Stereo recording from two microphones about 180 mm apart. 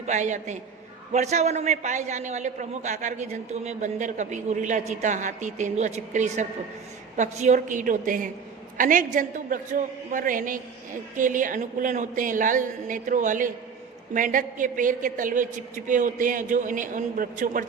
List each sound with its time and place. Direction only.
0.0 s a woman's voice: 45° right (ahead or behind)